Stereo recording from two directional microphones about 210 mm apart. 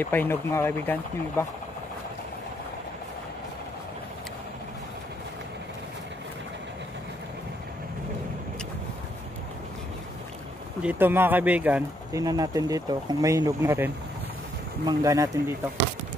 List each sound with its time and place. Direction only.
0.0 s speech: 10° left (ahead or behind)
10.8 s speech: 10° right (ahead or behind)